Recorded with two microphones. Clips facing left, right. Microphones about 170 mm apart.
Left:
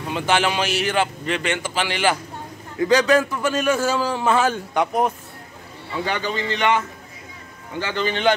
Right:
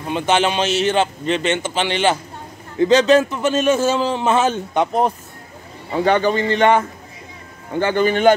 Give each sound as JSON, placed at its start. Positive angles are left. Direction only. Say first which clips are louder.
{"t": 0.1, "sound": "a man's voice", "louder": "right 3 dB", "side_deg": -20}
{"t": 5.9, "sound": "a man's voice", "louder": "right 9 dB", "side_deg": -45}
{"t": 7.8, "sound": "a man's voice", "louder": "right 7 dB", "side_deg": -50}